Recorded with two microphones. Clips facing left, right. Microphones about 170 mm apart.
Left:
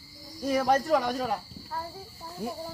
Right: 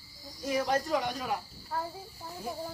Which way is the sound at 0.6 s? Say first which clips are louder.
Left 5 dB; 55° left (ahead or behind).